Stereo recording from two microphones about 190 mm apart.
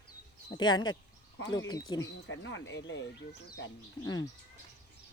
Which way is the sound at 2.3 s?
75° left (ahead or behind).